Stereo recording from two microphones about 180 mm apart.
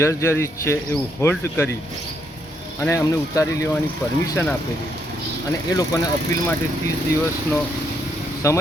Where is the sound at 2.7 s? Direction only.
15° left (ahead or behind).